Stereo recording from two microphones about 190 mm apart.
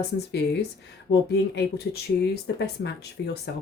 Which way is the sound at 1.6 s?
60° left (ahead or behind).